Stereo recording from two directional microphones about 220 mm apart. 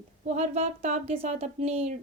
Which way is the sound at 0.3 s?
30° right (ahead or behind).